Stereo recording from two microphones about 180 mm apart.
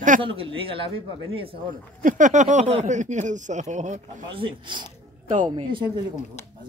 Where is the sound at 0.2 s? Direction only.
30° right (ahead or behind).